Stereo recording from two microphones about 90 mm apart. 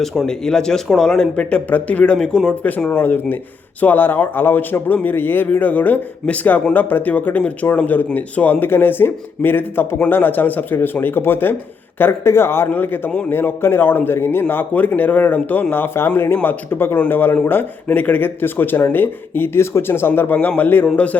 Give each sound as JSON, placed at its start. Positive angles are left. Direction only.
{"t": 0.0, "sound": "speech", "side_deg": 0}